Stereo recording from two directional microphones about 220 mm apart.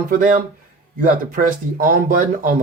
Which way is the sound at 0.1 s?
40° right (ahead or behind).